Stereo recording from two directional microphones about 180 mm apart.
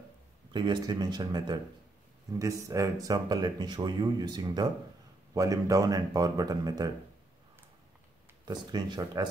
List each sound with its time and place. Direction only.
0.5 s speech: 25° right (ahead or behind)
8.5 s speech: 25° right (ahead or behind)